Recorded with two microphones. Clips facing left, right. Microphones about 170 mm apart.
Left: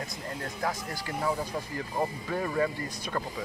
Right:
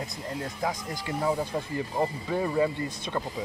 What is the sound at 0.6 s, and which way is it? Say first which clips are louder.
Speech: left 1 dB; 15° right (ahead or behind).